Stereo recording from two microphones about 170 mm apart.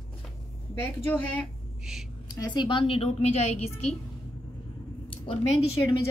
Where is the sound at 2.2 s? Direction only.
25° left (ahead or behind); by 3.5 s 40° left (ahead or behind).